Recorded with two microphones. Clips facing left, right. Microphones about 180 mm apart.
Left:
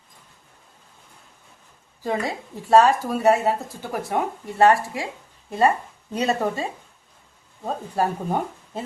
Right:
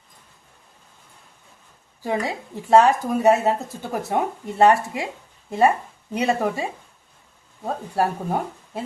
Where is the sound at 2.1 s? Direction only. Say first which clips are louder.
Right 1 dB; 15° right (ahead or behind).